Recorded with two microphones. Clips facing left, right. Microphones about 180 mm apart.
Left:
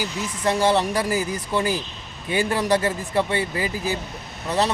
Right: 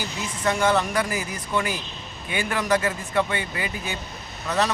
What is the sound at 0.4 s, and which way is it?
Speech, 30° left (ahead or behind).